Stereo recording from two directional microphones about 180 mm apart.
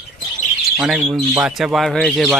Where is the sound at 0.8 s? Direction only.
Centre (ahead or behind).